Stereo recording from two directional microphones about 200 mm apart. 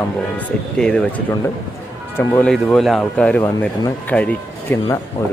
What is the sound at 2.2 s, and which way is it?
Speech, 5° left (ahead or behind).